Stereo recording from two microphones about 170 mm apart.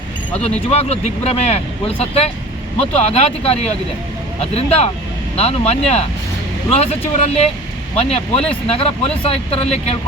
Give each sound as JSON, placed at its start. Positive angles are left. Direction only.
{"t": 0.7, "sound": "speech", "side_deg": 40}